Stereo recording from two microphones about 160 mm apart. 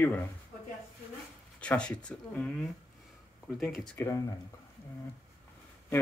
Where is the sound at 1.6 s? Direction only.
5° left (ahead or behind).